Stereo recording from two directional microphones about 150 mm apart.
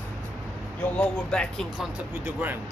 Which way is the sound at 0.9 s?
5° left (ahead or behind).